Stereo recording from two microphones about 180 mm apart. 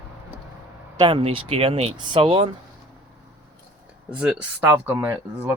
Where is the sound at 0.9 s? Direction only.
30° right (ahead or behind).